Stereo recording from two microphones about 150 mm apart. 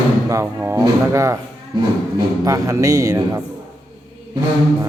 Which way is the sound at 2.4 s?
20° right (ahead or behind).